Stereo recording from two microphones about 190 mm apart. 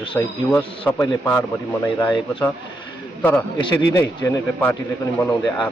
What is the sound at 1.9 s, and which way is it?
Speech, 25° left (ahead or behind).